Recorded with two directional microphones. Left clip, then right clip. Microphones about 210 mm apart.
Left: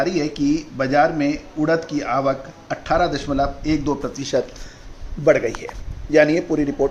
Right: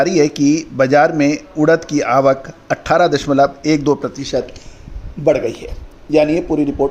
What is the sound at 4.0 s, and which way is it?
Speech, 20° right (ahead or behind).